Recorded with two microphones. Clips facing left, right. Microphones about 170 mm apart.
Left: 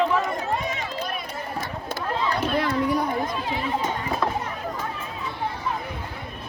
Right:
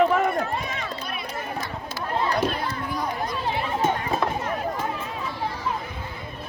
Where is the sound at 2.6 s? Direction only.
65° left (ahead or behind).